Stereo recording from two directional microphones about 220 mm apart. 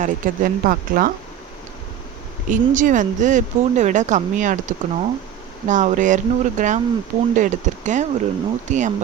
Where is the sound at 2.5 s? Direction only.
35° right (ahead or behind).